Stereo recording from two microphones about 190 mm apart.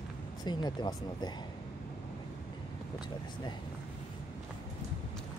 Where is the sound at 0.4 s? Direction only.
20° left (ahead or behind).